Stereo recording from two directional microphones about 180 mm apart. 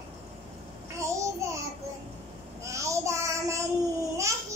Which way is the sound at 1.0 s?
15° right (ahead or behind).